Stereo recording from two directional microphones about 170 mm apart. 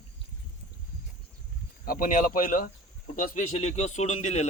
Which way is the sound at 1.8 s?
55° left (ahead or behind).